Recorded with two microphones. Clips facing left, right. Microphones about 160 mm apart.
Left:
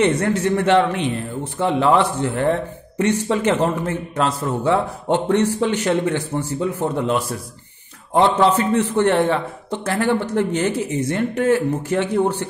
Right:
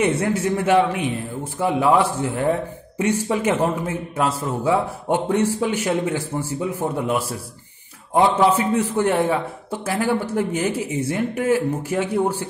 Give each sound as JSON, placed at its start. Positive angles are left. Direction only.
{"t": 0.0, "sound": "speech", "side_deg": -10}